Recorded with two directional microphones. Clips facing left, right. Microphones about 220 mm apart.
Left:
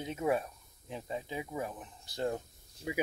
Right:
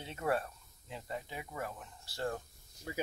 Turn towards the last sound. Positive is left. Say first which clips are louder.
# left 5 dB
turn(degrees=10)  # may be behind; listen again after turning